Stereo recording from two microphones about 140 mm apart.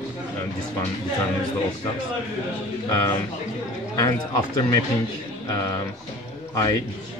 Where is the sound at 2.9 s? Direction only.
25° left (ahead or behind).